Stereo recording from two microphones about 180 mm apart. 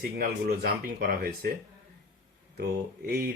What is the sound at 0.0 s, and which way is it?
Speech, 55° right (ahead or behind).